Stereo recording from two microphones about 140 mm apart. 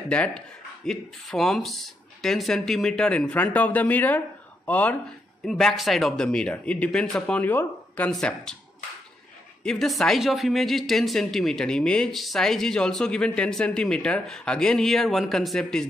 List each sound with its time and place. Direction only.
0.1 s speech: 10° left (ahead or behind)
9.6 s speech: 5° left (ahead or behind)